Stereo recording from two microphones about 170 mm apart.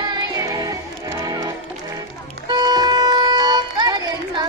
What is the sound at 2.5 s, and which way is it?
Music, 25° right (ahead or behind).